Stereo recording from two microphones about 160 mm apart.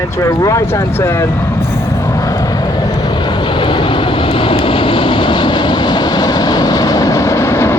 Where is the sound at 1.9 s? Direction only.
20° left (ahead or behind).